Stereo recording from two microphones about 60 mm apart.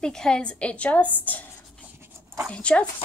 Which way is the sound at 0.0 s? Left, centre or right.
Centre.